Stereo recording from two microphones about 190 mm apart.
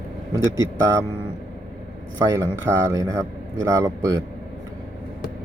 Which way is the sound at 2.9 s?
15° right (ahead or behind).